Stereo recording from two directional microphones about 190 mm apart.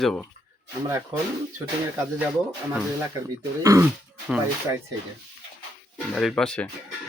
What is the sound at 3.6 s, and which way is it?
Speech, 15° right (ahead or behind).